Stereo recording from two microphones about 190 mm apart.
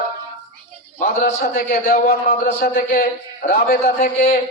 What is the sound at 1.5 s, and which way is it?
A man's voice, 45° left (ahead or behind).